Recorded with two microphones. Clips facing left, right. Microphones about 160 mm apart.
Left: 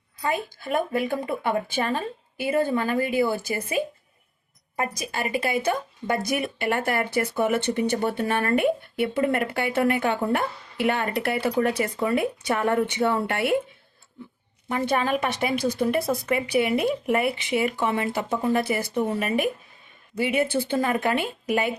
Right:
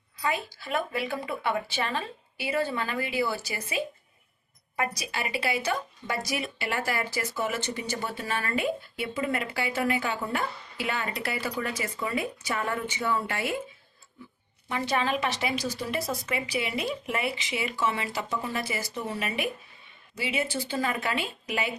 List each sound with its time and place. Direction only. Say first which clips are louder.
0.2 s a woman's voice: left 3 dB; 50° left (ahead or behind)
14.7 s a woman's voice: left 4 dB; 45° left (ahead or behind)